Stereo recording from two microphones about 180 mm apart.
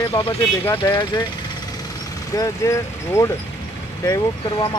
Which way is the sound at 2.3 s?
15° left (ahead or behind).